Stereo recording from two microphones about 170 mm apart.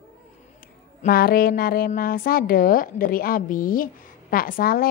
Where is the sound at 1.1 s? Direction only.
60° left (ahead or behind).